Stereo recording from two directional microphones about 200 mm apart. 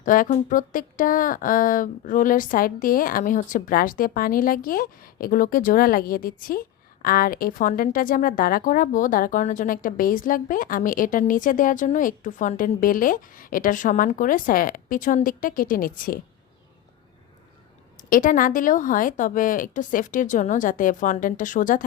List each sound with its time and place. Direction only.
0.0 s a woman's voice: 40° left (ahead or behind)
18.1 s a woman's voice: 40° left (ahead or behind)